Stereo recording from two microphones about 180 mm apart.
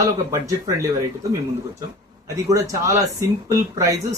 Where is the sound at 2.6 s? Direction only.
15° right (ahead or behind).